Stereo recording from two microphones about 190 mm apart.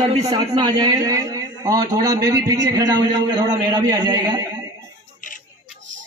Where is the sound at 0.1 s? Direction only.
30° right (ahead or behind).